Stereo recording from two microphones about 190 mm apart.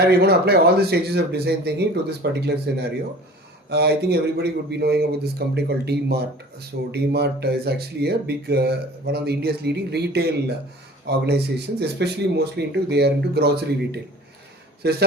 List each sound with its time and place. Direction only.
0.1 s speech: 55° right (ahead or behind)